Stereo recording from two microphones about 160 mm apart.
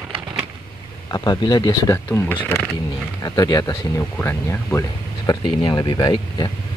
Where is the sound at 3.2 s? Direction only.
25° left (ahead or behind).